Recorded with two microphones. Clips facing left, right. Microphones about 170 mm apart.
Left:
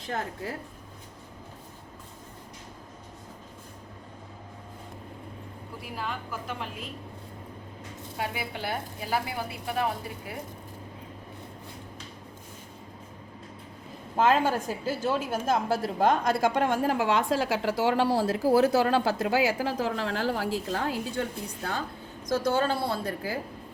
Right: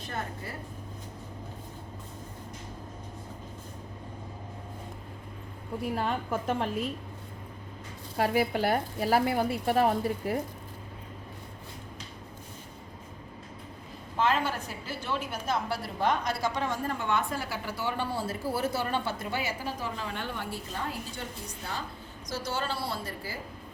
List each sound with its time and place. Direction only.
6.0 s a woman's voice: 40° right (ahead or behind)
8.1 s speech: 45° right (ahead or behind)
14.2 s a woman's voice: 45° left (ahead or behind); by 21.2 s 90° left
21.6 s a woman's voice: 55° left (ahead or behind)